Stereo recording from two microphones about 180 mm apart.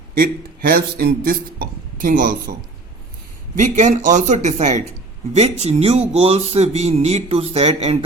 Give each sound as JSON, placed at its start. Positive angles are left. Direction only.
{"t": 0.1, "sound": "a man's voice", "side_deg": -55}